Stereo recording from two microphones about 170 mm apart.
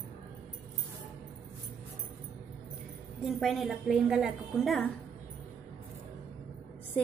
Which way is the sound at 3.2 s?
Centre (ahead or behind).